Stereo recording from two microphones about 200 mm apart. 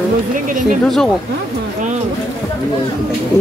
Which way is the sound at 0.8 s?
Centre (ahead or behind).